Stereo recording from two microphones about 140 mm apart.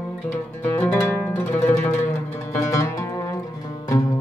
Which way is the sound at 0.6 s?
15° left (ahead or behind).